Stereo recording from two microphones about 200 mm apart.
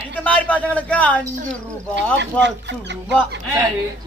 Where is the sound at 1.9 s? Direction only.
60° right (ahead or behind).